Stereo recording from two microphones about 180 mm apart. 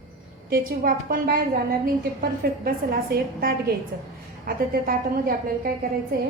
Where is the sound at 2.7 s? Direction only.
55° right (ahead or behind).